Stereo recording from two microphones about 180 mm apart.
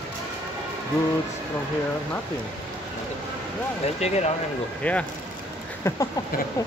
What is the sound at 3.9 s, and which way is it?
Speech, 35° left (ahead or behind).